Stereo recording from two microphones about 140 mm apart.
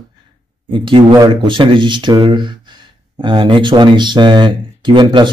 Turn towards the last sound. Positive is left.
turn(degrees=-35)  # may be behind; listen again after turning